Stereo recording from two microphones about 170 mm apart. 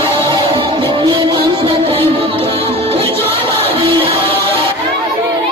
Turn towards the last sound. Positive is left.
turn(degrees=-35)  # may be behind; listen again after turning